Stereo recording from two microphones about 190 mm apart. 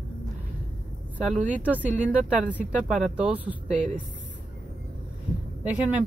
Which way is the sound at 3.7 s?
40° right (ahead or behind).